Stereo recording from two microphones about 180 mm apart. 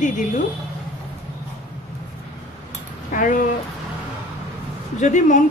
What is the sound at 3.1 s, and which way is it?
Speech, 45° left (ahead or behind).